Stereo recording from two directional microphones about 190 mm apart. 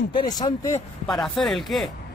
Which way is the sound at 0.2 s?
20° left (ahead or behind).